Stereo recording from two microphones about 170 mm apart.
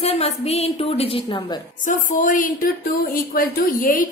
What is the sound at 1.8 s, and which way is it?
A woman's voice, 50° left (ahead or behind).